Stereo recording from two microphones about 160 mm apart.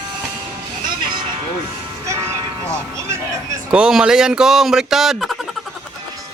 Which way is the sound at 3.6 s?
5° right (ahead or behind).